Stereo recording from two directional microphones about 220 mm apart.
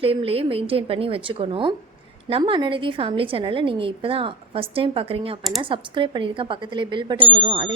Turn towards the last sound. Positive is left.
turn(degrees=-25)  # may be behind; listen again after turning